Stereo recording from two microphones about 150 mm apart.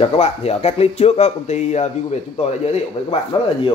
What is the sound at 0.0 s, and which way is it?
Speech, 45° left (ahead or behind).